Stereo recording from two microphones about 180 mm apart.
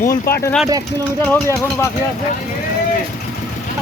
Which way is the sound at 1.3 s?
15° left (ahead or behind).